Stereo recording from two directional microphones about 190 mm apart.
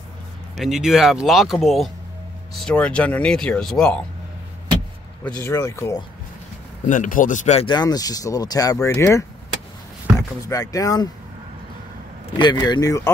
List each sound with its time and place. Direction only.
0.6 s speech: centre (ahead or behind)
5.2 s speech: 15° left (ahead or behind)
6.9 s speech: 45° left (ahead or behind); by 9.2 s 15° left (ahead or behind)
10.4 s speech: 20° left (ahead or behind)
12.4 s speech: 25° left (ahead or behind)